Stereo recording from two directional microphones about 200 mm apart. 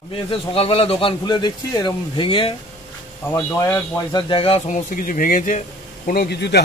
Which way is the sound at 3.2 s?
10° left (ahead or behind).